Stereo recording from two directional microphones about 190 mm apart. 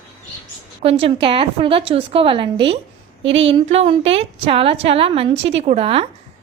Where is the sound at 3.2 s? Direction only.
80° right.